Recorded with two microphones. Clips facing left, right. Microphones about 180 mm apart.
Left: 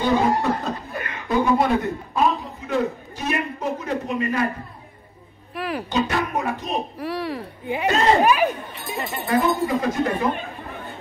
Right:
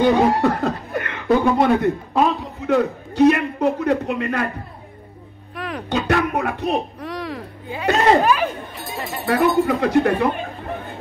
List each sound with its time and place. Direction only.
0.3 s chuckle: 60° right (ahead or behind)
0.9 s a man's voice: 60° right (ahead or behind)
5.5 s a sound: 5° left (ahead or behind)
5.9 s speech: 65° right (ahead or behind)
7.0 s speech: 5° left (ahead or behind)
7.6 s speech: 15° left (ahead or behind)
8.9 s speech: centre (ahead or behind)
9.2 s speech: 65° right (ahead or behind)